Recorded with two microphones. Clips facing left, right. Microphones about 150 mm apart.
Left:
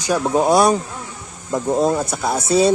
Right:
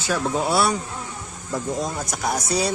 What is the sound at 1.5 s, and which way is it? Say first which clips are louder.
Speech: left 9 dB; 60° left (ahead or behind).